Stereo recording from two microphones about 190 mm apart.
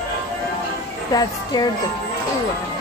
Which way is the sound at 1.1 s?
20° left (ahead or behind).